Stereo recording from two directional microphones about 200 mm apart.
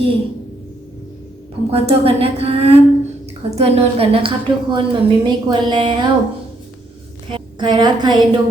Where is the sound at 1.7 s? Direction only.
30° right (ahead or behind).